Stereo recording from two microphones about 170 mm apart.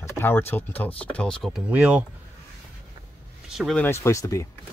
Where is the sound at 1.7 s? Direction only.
10° right (ahead or behind).